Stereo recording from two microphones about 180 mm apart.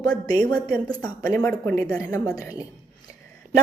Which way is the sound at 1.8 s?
20° left (ahead or behind).